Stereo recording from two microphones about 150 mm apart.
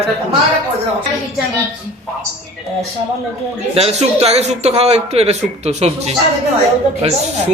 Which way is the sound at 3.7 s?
45° right (ahead or behind).